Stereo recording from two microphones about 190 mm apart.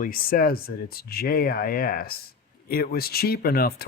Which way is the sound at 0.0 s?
50° left (ahead or behind).